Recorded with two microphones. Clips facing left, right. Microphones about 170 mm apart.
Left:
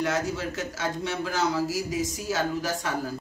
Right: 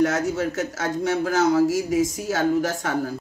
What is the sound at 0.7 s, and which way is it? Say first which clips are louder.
Speech: right 7 dB; 45° right (ahead or behind).